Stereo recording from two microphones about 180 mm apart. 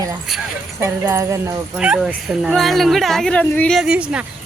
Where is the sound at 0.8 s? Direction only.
15° right (ahead or behind).